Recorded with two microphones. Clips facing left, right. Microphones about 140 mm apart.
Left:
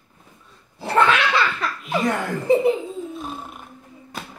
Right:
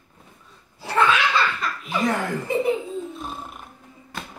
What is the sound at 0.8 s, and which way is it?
Belly laugh, 60° left (ahead or behind).